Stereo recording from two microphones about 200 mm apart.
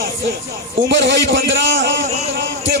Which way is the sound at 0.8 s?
60° right (ahead or behind).